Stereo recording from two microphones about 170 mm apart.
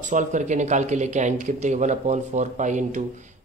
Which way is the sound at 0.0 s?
45° right (ahead or behind).